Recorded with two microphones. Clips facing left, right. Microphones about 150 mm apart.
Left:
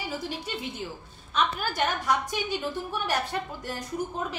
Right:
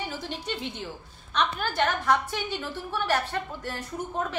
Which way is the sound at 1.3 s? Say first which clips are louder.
Even; 10° left (ahead or behind).